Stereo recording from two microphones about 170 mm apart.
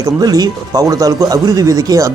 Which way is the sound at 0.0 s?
20° right (ahead or behind).